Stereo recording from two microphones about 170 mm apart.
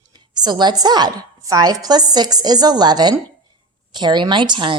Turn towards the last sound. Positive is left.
turn(degrees=-30)  # may be behind; listen again after turning